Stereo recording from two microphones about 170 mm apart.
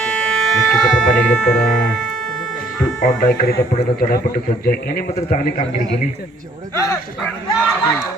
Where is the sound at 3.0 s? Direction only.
50° left (ahead or behind).